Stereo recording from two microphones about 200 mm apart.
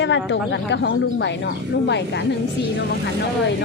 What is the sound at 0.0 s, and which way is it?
A woman's voice, 65° left (ahead or behind).